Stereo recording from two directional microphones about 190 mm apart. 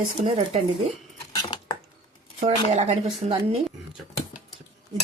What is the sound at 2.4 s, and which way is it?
Speech, 35° right (ahead or behind).